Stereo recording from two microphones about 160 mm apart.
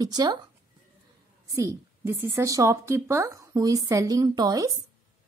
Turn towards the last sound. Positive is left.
turn(degrees=-25)  # may be behind; listen again after turning